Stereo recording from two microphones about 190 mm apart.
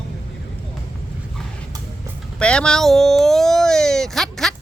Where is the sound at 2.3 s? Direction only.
5° left (ahead or behind).